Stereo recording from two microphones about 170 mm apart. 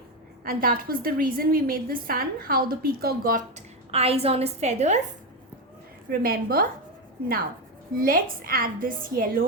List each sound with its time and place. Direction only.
0.4 s a woman's voice: 60° right (ahead or behind)
3.9 s a woman's voice: 35° right (ahead or behind)
6.1 s a woman's voice: 60° right (ahead or behind)
7.9 s a woman's voice: 55° right (ahead or behind)